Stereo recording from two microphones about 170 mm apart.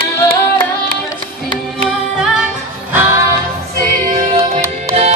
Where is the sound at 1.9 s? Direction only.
Centre (ahead or behind).